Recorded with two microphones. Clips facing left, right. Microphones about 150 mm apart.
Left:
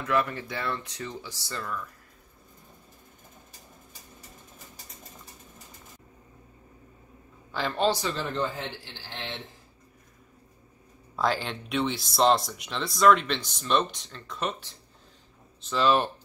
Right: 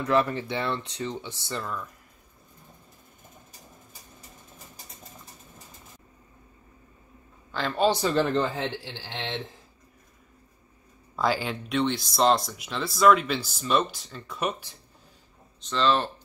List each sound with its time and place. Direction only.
0.0 s speech: 30° right (ahead or behind)
7.5 s speech: centre (ahead or behind)
8.2 s a man's voice: 90° right
11.1 s speech: 5° right (ahead or behind)
15.6 s speech: 10° left (ahead or behind)